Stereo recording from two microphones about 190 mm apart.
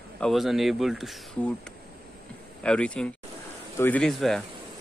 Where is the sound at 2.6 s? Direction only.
5° left (ahead or behind).